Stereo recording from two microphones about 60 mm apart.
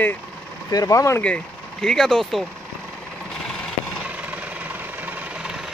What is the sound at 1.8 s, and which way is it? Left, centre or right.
Speech, centre.